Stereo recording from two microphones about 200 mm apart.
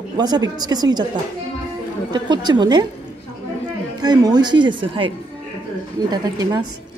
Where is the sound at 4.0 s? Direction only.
20° right (ahead or behind).